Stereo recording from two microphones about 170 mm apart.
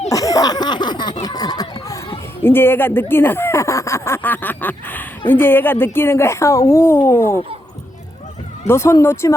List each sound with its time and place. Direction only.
0.1 s a sound: 20° left (ahead or behind)
1.2 s chatter: 20° left (ahead or behind)
8.6 s speech: 15° left (ahead or behind)